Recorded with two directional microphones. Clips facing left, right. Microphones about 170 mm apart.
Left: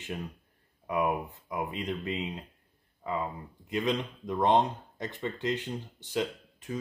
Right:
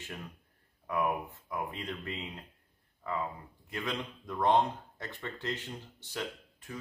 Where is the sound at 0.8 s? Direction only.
15° left (ahead or behind).